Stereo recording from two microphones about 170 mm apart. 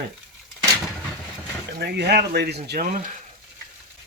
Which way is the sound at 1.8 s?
80° right.